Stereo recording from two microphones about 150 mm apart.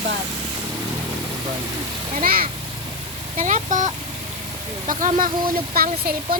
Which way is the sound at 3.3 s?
55° right (ahead or behind).